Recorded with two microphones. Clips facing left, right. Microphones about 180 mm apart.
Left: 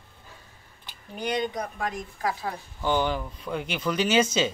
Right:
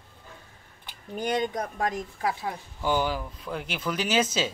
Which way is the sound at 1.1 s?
45° right (ahead or behind).